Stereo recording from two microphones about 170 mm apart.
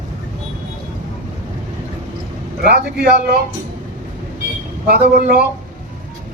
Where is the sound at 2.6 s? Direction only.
70° right (ahead or behind).